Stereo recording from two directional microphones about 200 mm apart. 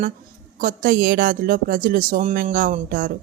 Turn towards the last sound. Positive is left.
turn(degrees=-45)  # may be behind; listen again after turning